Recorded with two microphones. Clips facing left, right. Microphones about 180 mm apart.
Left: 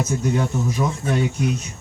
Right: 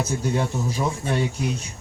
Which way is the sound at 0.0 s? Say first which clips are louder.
Left 2 dB; 30° right (ahead or behind).